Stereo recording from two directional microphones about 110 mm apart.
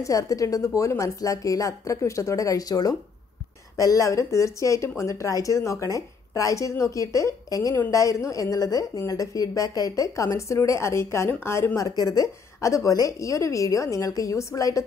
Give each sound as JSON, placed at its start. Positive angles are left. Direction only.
{"t": 0.0, "sound": "speech", "side_deg": 30}